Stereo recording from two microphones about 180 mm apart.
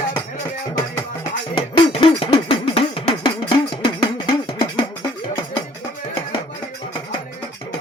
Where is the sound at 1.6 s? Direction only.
30° left (ahead or behind).